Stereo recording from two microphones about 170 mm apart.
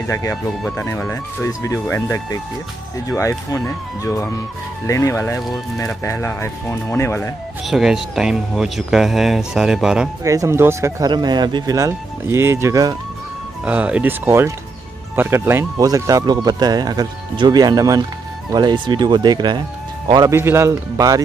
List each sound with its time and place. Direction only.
0.1 s speech: 20° left (ahead or behind)
7.6 s speech: centre (ahead or behind)
10.2 s a man's voice: 20° right (ahead or behind)